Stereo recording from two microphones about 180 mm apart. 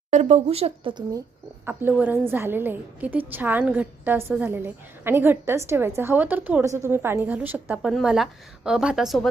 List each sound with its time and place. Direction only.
0.1 s speech: 40° right (ahead or behind)
1.6 s a woman's voice: 10° right (ahead or behind)